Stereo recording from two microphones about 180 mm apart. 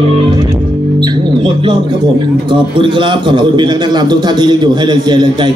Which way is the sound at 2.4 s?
25° right (ahead or behind).